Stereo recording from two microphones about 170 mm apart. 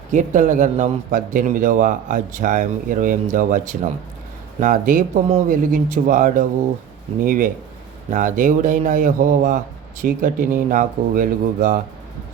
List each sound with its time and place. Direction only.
0.1 s a man's voice: 50° right (ahead or behind)